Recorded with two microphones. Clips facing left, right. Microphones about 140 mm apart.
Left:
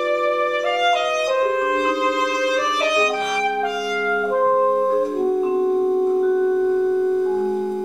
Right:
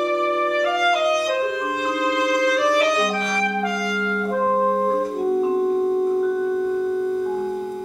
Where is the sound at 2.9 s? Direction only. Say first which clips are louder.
Left 2 dB; 5° left (ahead or behind).